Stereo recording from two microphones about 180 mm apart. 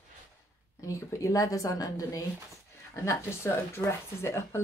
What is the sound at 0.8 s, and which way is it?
Speech, 15° left (ahead or behind).